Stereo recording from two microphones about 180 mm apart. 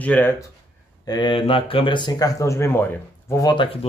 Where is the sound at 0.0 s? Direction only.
10° left (ahead or behind).